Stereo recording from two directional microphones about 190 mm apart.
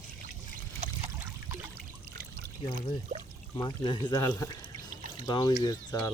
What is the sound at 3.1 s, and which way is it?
Speech, 40° right (ahead or behind).